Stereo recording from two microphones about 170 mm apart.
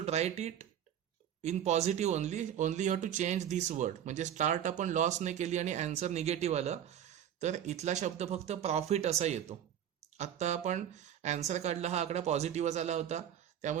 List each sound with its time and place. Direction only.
0.0 s speech: 40° right (ahead or behind)